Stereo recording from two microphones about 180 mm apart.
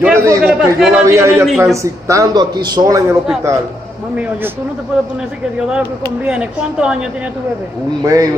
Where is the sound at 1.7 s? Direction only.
15° right (ahead or behind).